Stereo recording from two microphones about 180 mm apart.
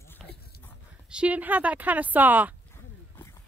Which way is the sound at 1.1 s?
5° right (ahead or behind).